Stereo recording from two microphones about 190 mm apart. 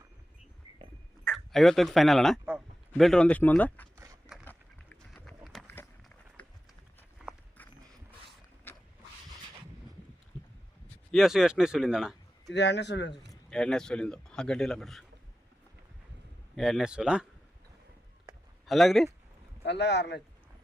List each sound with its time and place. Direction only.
1.2 s speech: centre (ahead or behind)
3.9 s a sound: 15° right (ahead or behind)
4.4 s a sound: 5° left (ahead or behind)
8.7 s a sound: 10° left (ahead or behind)
11.1 s speech: centre (ahead or behind)
12.5 s speech: 65° left (ahead or behind)
13.5 s a man's voice: 5° left (ahead or behind)
16.6 s a man's voice: centre (ahead or behind)
18.6 s speech: centre (ahead or behind)
19.6 s speech: 65° left (ahead or behind)